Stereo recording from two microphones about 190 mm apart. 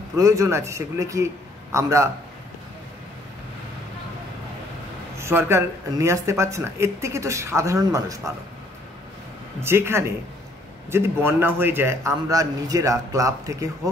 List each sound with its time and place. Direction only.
0.2 s speech: 15° right (ahead or behind)
5.1 s speech: 15° right (ahead or behind)
9.6 s speech: 15° right (ahead or behind)